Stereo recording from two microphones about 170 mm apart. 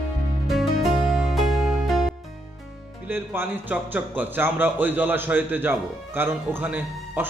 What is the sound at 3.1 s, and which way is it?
Speech, 10° right (ahead or behind).